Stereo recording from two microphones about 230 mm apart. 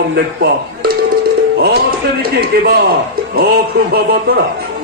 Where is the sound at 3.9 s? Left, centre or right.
Right.